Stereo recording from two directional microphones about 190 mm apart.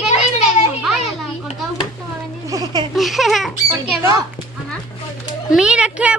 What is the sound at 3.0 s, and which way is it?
Speech, centre (ahead or behind).